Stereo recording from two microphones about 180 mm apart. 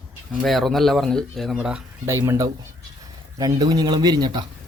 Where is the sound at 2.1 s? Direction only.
15° right (ahead or behind).